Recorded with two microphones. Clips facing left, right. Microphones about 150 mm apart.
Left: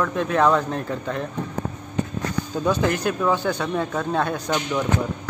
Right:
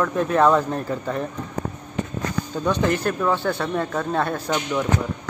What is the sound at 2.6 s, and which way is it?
A man's voice, 5° left (ahead or behind).